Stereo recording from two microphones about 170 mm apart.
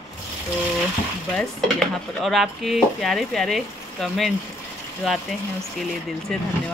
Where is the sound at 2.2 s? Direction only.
Centre (ahead or behind).